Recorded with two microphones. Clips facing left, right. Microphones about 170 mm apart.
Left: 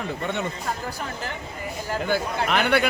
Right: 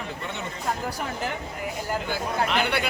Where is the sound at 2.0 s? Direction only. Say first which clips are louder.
Left 4 dB; 55° left (ahead or behind).